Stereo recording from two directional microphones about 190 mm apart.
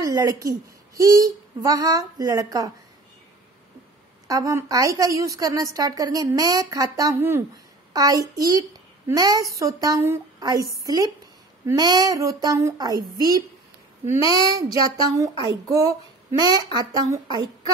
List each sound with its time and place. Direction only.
0.0 s a child's voice: 20° right (ahead or behind)
4.3 s a child's voice: 15° right (ahead or behind)